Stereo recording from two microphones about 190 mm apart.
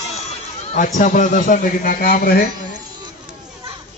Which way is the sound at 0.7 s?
45° left (ahead or behind).